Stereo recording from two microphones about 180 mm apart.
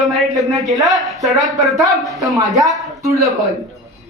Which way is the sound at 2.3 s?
20° right (ahead or behind).